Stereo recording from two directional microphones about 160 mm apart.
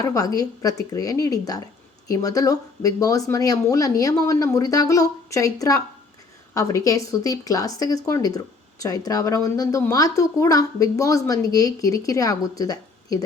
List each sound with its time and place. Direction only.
0.0 s speech: 20° left (ahead or behind)